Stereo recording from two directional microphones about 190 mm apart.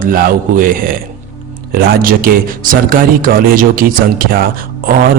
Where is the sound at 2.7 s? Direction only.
45° right (ahead or behind).